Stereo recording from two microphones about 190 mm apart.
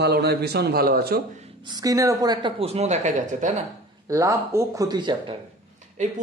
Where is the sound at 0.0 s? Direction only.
55° right (ahead or behind).